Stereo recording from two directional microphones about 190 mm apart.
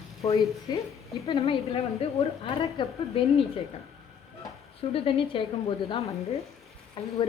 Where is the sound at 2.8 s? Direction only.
25° left (ahead or behind).